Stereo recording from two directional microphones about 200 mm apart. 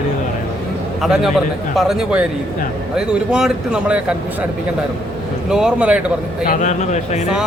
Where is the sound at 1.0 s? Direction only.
Centre (ahead or behind).